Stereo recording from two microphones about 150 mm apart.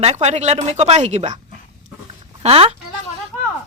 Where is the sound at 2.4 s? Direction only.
40° right (ahead or behind).